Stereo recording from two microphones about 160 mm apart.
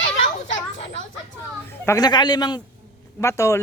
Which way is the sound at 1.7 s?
20° left (ahead or behind).